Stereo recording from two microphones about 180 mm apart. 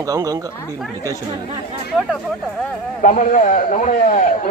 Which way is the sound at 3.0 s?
45° left (ahead or behind).